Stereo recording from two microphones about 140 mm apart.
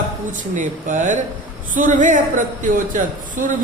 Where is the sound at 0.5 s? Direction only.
65° right (ahead or behind).